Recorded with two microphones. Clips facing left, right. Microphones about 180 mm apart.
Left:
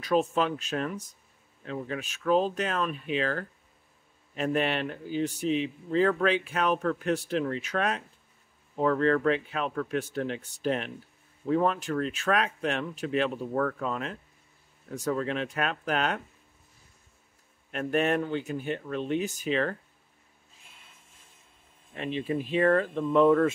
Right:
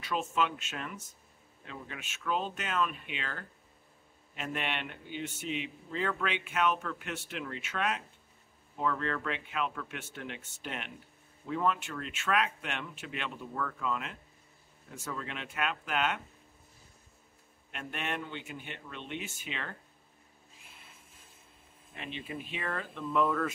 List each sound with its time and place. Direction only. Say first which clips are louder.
0.0 s speech: left 7 dB; 35° left (ahead or behind)
17.6 s speech: left 12 dB; 40° left (ahead or behind)
21.9 s speech: left 11 dB; 40° left (ahead or behind)